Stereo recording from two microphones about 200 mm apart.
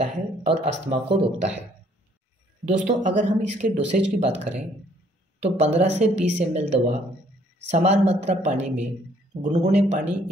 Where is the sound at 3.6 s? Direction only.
40° right (ahead or behind).